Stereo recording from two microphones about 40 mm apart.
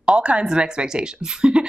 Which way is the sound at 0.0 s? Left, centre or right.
Right.